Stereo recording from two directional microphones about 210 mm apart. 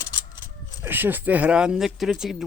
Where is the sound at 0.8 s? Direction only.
10° right (ahead or behind).